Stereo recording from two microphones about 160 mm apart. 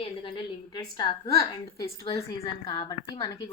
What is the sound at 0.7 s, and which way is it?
Speech, 25° left (ahead or behind).